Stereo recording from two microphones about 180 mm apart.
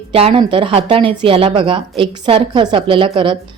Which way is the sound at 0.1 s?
30° right (ahead or behind).